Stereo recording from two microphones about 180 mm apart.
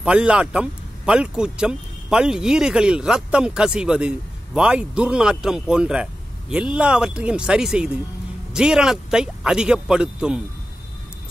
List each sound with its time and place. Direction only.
0.0 s speech: 5° right (ahead or behind)